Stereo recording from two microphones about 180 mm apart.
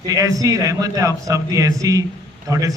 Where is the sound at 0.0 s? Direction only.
20° right (ahead or behind).